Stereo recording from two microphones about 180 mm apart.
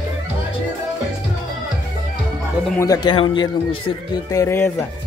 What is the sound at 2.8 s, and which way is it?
Speech, 20° left (ahead or behind).